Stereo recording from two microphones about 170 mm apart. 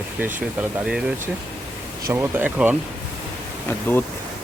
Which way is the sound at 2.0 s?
15° right (ahead or behind).